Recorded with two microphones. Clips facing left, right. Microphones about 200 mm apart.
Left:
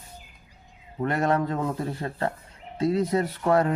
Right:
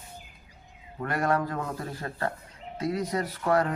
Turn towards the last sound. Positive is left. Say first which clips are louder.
# left 3 dB
turn(degrees=25)  # may be behind; listen again after turning